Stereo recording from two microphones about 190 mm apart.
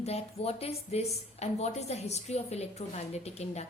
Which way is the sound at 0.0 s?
35° left (ahead or behind).